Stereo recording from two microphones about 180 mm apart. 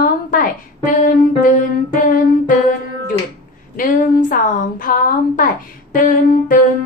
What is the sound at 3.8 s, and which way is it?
A woman's voice, 50° left (ahead or behind).